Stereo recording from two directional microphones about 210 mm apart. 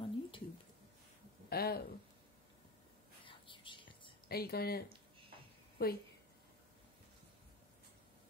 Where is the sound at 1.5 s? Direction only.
45° left (ahead or behind).